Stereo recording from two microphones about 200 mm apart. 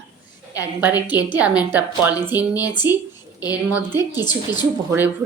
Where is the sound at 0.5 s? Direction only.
10° right (ahead or behind).